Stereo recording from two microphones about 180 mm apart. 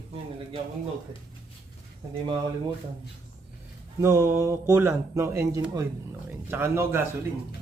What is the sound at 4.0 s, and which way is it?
Speech, 15° right (ahead or behind).